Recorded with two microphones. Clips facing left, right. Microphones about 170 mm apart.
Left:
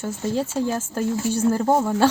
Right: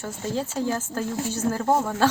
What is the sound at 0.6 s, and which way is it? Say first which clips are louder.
Speech: left 3 dB; 15° left (ahead or behind).